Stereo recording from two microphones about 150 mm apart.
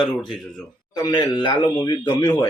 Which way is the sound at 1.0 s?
25° left (ahead or behind).